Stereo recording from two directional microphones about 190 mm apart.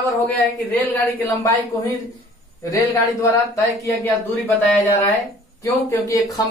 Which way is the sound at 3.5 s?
10° left (ahead or behind).